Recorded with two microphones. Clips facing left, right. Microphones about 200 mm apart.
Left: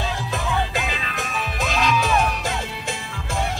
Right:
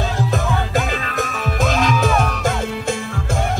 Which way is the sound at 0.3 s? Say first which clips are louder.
Right 4 dB; 45° right (ahead or behind).